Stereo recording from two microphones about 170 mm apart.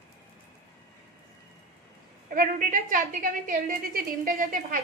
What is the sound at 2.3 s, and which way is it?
A woman's voice, 55° right (ahead or behind).